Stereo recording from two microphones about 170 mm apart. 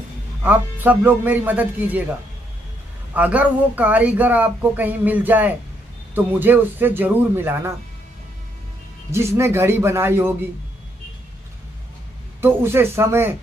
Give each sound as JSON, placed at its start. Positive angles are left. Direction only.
{"t": 0.4, "sound": "speech", "side_deg": -10}
{"t": 3.1, "sound": "speech", "side_deg": -10}
{"t": 9.1, "sound": "speech", "side_deg": -15}
{"t": 12.4, "sound": "speech", "side_deg": -15}